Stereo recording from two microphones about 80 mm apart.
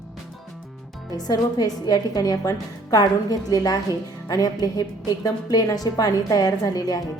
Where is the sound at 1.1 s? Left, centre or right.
Left.